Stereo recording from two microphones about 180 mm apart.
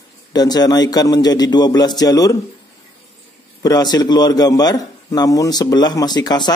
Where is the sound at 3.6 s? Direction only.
20° left (ahead or behind).